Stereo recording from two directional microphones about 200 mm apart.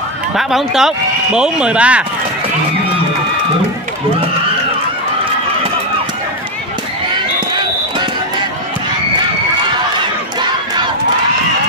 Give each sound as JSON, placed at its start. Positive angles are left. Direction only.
{"t": 0.4, "sound": "speech", "side_deg": 0}
{"t": 7.5, "sound": "run", "side_deg": -20}